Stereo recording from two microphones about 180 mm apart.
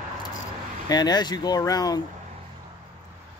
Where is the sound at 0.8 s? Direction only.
20° left (ahead or behind).